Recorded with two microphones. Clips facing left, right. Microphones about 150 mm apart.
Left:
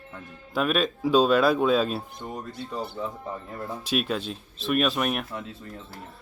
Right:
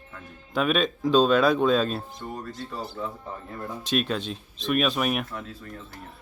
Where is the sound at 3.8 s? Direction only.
5° left (ahead or behind).